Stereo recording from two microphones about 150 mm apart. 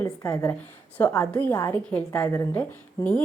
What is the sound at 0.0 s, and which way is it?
A woman's voice, 15° left (ahead or behind).